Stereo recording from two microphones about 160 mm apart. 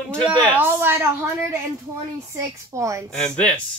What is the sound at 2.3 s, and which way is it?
Speech, 20° right (ahead or behind).